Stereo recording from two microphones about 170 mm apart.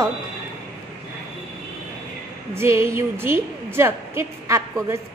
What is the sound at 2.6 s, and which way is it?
A woman's voice, 15° right (ahead or behind).